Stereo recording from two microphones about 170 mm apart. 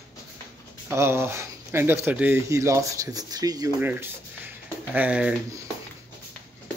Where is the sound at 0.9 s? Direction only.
15° right (ahead or behind).